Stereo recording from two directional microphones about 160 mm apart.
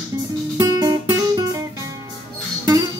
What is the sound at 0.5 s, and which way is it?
Guitar, 25° right (ahead or behind).